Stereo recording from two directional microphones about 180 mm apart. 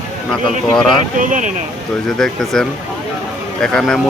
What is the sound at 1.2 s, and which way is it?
Speech, 45° right (ahead or behind).